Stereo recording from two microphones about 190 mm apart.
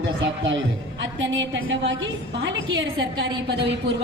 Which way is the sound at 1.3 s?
75° right (ahead or behind).